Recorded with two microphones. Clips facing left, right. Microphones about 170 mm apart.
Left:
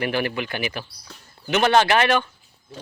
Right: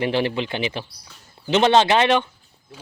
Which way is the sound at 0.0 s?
25° right (ahead or behind).